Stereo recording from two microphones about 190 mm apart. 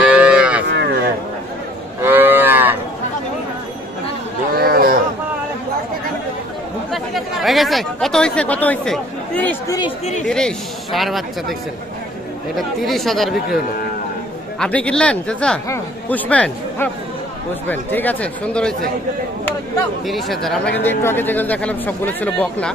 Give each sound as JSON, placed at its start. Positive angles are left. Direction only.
{"t": 0.0, "sound": "cattle", "side_deg": -5}
{"t": 0.7, "sound": "a sound", "side_deg": -65}
{"t": 2.0, "sound": "moo", "side_deg": -10}
{"t": 4.5, "sound": "a sound", "side_deg": -50}
{"t": 6.9, "sound": "speech", "side_deg": 0}
{"t": 12.5, "sound": "speech", "side_deg": 0}
{"t": 14.6, "sound": "speech", "side_deg": 5}
{"t": 20.1, "sound": "speech", "side_deg": 0}